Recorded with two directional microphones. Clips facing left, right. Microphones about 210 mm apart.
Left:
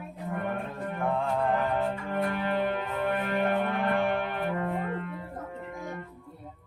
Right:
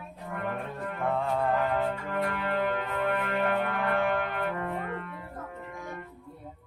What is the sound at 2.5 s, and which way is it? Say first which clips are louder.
Music: even; 20° left (ahead or behind).